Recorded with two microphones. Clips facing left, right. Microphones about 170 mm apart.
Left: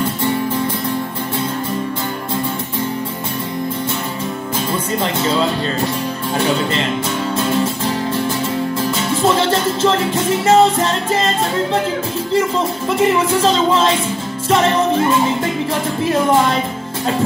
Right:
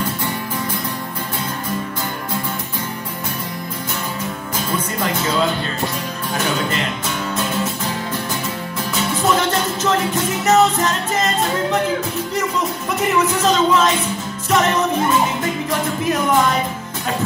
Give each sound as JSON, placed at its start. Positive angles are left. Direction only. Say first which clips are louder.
{"t": 4.7, "sound": "music", "louder": "left 1 dB", "side_deg": 25}
{"t": 9.1, "sound": "music", "louder": "left 3 dB", "side_deg": 30}
{"t": 10.4, "sound": "speech", "louder": "left 2 dB", "side_deg": 30}
{"t": 12.3, "sound": "speech", "louder": "left 8 dB", "side_deg": 30}